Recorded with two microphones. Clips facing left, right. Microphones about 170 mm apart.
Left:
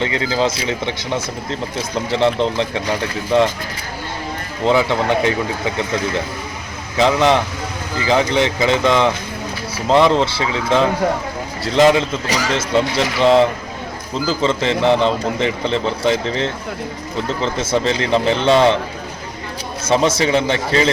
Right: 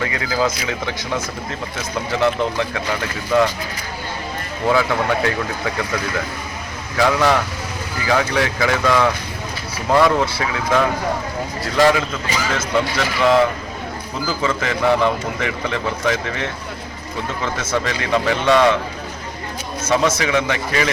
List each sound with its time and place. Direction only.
0.0 s speech: 25° left (ahead or behind)
4.6 s speech: 25° left (ahead or behind)
19.9 s speech: 30° left (ahead or behind)